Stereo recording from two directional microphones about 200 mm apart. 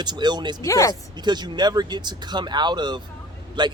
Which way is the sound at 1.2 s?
20° right (ahead or behind).